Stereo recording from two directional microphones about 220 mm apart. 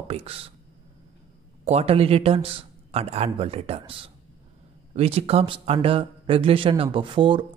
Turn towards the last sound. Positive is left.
turn(degrees=-20)  # may be behind; listen again after turning